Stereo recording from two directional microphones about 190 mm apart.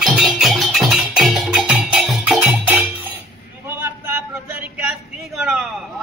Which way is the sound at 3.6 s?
10° right (ahead or behind).